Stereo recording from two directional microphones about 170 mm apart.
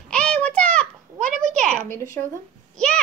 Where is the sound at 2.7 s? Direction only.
5° left (ahead or behind).